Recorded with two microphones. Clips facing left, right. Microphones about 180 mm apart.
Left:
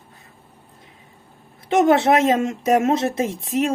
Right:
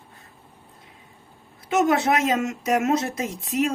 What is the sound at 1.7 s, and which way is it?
Speech, 30° left (ahead or behind).